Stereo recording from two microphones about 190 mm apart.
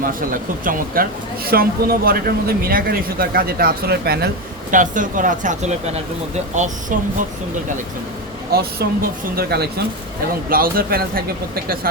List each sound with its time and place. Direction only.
0.0 s speech: 45° right (ahead or behind)
4.7 s speech: 45° right (ahead or behind)
8.8 s speech: 55° right (ahead or behind)